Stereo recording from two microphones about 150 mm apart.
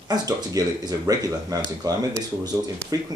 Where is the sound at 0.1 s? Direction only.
25° right (ahead or behind).